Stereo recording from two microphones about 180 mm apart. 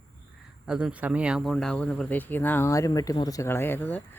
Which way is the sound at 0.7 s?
5° right (ahead or behind).